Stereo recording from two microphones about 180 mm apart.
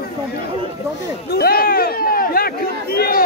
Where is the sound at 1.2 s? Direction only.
60° left (ahead or behind).